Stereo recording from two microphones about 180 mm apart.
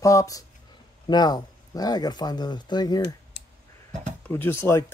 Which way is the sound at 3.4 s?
75° left (ahead or behind).